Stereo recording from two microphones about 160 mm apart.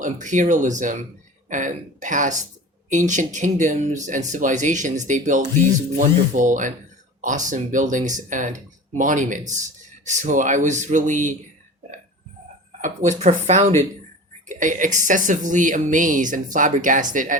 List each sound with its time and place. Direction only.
0.0 s speech: 50° right (ahead or behind)
12.8 s speech: 50° right (ahead or behind)